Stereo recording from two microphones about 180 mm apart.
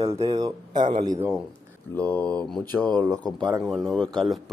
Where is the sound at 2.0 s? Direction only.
10° left (ahead or behind).